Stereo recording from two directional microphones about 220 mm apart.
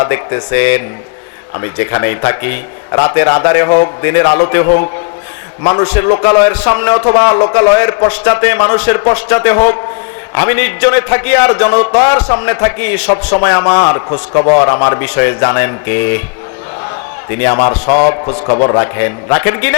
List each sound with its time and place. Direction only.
0.0 s a man's voice: 20° left (ahead or behind)
5.8 s a man's voice: 10° left (ahead or behind)
14.1 s a man's voice: 30° left (ahead or behind)
14.6 s a man's voice: 20° left (ahead or behind)
17.2 s a man's voice: 15° left (ahead or behind)
17.8 s a man's voice: 35° left (ahead or behind)
18.1 s a man's voice: 25° left (ahead or behind)